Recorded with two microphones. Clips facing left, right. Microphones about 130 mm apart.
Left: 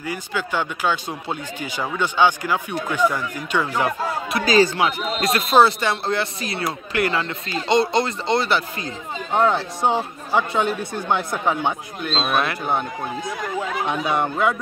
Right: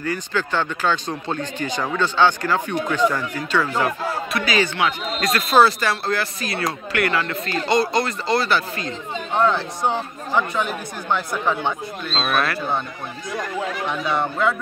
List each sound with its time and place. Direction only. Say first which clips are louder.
0.0 s speech: right 3 dB; 10° left (ahead or behind)
4.4 s speech: left 5 dB; 35° left (ahead or behind)
11.1 s speech: even; 15° left (ahead or behind)
13.8 s speech: left 1 dB; 15° left (ahead or behind)